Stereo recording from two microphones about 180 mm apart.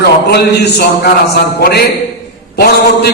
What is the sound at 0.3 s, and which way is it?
A man's voice, 65° left (ahead or behind).